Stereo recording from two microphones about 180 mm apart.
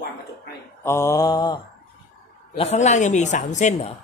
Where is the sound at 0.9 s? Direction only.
15° left (ahead or behind).